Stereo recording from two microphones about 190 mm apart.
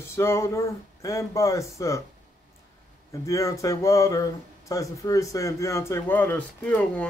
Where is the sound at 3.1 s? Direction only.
15° left (ahead or behind).